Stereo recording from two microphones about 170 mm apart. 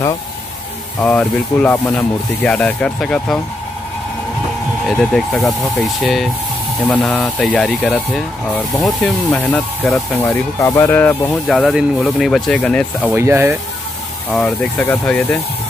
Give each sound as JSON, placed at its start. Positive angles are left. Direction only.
{"t": 0.9, "sound": "speech", "side_deg": 10}
{"t": 4.8, "sound": "speech", "side_deg": 0}
{"t": 10.2, "sound": "speech", "side_deg": 15}
{"t": 13.1, "sound": "speech", "side_deg": -15}
{"t": 14.3, "sound": "speech", "side_deg": 10}